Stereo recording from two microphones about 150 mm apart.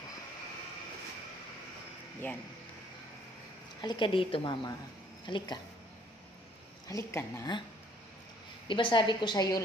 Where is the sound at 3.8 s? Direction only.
30° left (ahead or behind).